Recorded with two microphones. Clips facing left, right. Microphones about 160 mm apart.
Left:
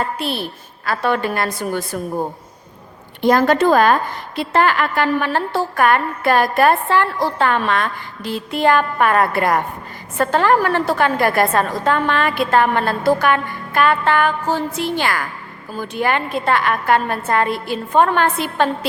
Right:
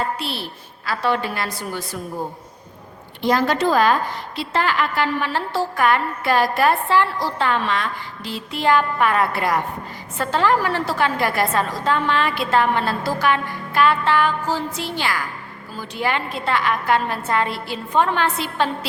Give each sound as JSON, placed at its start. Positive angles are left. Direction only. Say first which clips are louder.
{"t": 0.2, "sound": "a woman's voice", "louder": "left 5 dB", "side_deg": 50}
{"t": 3.2, "sound": "a woman's voice", "louder": "left 5 dB", "side_deg": 50}